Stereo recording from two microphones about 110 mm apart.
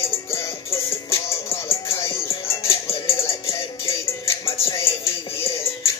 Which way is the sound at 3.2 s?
25° left (ahead or behind).